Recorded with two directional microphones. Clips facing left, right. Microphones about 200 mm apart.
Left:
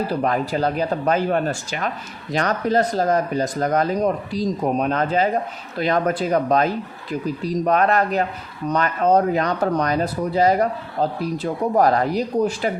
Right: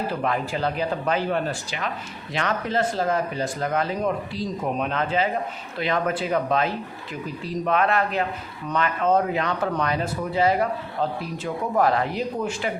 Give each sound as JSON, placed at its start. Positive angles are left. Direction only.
{"t": 0.1, "sound": "speech", "side_deg": 40}